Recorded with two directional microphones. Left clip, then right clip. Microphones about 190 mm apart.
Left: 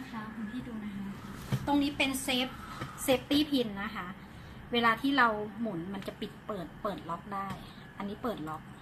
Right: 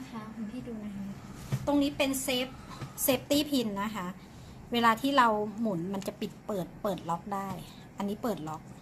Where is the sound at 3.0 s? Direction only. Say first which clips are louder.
Even; 65° right (ahead or behind).